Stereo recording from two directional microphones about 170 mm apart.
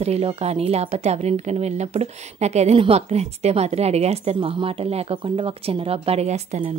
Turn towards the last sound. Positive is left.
turn(degrees=-40)  # may be behind; listen again after turning